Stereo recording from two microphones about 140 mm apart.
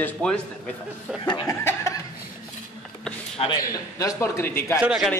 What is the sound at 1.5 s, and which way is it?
Chuckle, 20° left (ahead or behind).